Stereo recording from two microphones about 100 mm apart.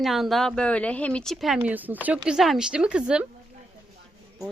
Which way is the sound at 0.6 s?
10° left (ahead or behind).